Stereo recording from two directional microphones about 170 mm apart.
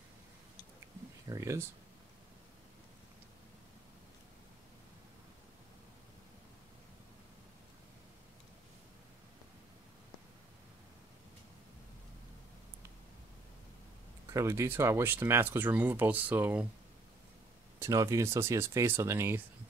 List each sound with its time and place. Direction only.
1.2 s speech: 20° right (ahead or behind)
14.3 s speech: 15° right (ahead or behind)
17.7 s speech: 15° right (ahead or behind)